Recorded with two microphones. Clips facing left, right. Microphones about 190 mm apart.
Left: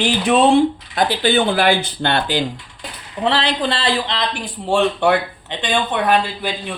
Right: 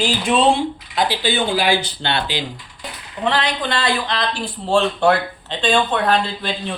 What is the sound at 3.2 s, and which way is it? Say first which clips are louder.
A man's voice: left 2 dB; 30° left (ahead or behind).